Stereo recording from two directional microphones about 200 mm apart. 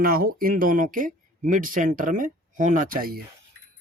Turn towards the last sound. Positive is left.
turn(degrees=-45)  # may be behind; listen again after turning